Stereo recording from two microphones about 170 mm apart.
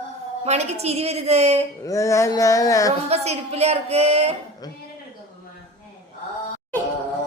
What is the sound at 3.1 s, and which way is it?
A woman's voice, 40° right (ahead or behind).